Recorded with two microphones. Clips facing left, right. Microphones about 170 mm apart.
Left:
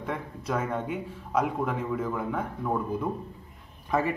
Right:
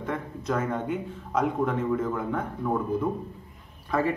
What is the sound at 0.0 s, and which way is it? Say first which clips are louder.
A man's voice: right 2 dB; 10° left (ahead or behind).